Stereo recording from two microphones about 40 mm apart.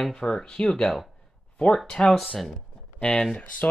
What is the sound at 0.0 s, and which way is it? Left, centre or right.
Speech, centre.